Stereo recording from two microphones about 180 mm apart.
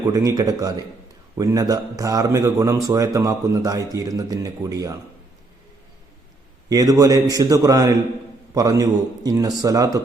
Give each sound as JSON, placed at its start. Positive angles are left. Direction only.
{"t": 0.0, "sound": "a man's voice", "side_deg": -20}
{"t": 6.7, "sound": "a man's voice", "side_deg": -20}